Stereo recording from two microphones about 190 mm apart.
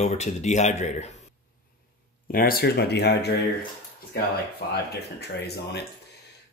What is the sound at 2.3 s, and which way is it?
Speech, 50° left (ahead or behind).